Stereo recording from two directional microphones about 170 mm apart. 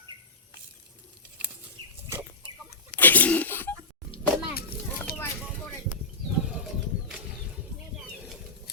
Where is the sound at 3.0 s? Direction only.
10° left (ahead or behind).